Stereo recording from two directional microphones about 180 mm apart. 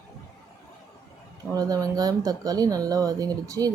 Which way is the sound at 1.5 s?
20° right (ahead or behind).